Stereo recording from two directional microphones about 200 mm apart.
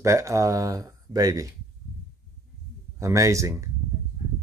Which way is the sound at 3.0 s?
15° right (ahead or behind).